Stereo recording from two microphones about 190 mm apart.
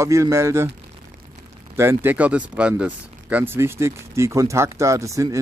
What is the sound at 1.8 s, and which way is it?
Speech, 10° right (ahead or behind).